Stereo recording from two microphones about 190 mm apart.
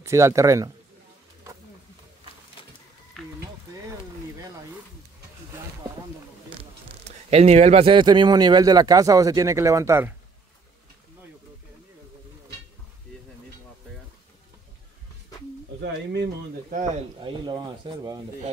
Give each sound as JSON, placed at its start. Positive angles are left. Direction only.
{"t": 0.0, "sound": "speech", "side_deg": -15}
{"t": 3.2, "sound": "a sound", "side_deg": 0}
{"t": 7.1, "sound": "speech", "side_deg": -35}
{"t": 15.8, "sound": "speech", "side_deg": -60}
{"t": 17.2, "sound": "speech", "side_deg": -25}